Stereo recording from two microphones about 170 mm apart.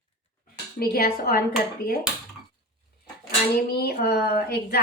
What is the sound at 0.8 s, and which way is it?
Speech, 60° left (ahead or behind).